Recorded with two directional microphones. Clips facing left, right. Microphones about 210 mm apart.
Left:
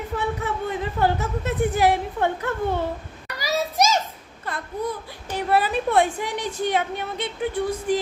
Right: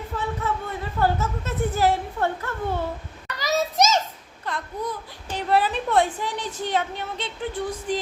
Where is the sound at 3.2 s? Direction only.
10° left (ahead or behind).